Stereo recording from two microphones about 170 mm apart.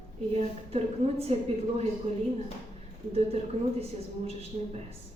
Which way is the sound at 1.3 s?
35° right (ahead or behind).